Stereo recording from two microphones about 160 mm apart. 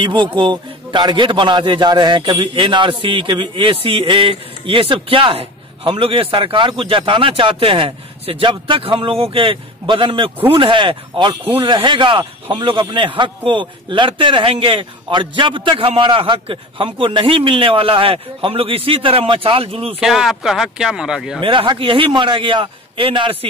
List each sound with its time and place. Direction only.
0.0 s a man's voice: 30° right (ahead or behind)
20.0 s speech: centre (ahead or behind)
21.4 s a man's voice: 30° right (ahead or behind)